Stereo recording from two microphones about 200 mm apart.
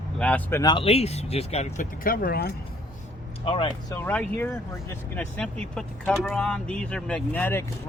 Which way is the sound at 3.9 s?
10° left (ahead or behind).